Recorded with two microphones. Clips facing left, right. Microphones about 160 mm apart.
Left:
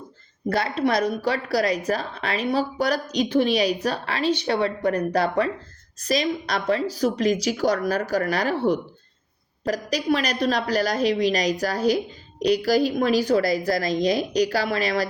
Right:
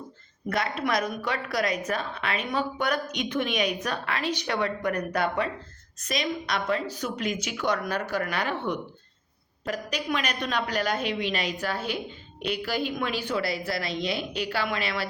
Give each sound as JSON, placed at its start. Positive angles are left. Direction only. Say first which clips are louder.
{"t": 0.5, "sound": "speech", "louder": "left 5 dB", "side_deg": 35}